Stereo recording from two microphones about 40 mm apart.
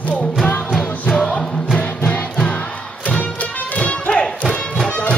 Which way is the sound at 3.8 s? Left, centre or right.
Left.